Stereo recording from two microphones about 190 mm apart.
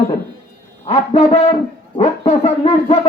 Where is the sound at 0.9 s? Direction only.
30° left (ahead or behind).